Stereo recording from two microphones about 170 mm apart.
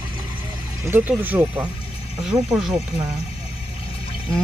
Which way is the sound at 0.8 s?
15° right (ahead or behind).